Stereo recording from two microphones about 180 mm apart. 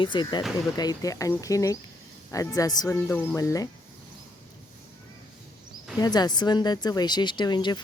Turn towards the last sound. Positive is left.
turn(degrees=25)  # may be behind; listen again after turning